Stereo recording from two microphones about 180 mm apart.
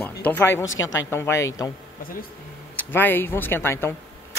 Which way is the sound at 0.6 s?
90° left.